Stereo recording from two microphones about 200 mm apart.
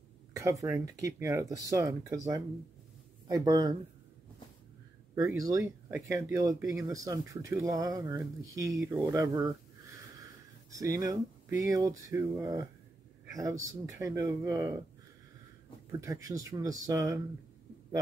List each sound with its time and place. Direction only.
0.4 s speech: 15° right (ahead or behind)
5.1 s speech: 15° right (ahead or behind)
10.7 s speech: 15° right (ahead or behind)
15.9 s speech: 15° right (ahead or behind)